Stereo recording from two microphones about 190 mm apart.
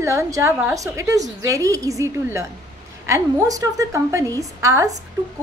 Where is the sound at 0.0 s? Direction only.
15° right (ahead or behind).